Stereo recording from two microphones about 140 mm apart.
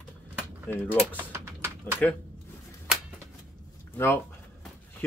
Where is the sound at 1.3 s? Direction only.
15° right (ahead or behind).